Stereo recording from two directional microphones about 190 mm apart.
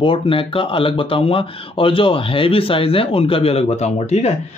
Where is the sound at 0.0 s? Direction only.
30° left (ahead or behind).